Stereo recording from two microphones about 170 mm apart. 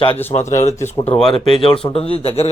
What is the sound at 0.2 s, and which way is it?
Speech, 10° left (ahead or behind).